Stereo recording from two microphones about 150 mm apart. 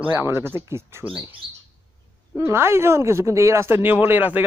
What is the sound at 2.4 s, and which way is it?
A man's voice, 15° right (ahead or behind).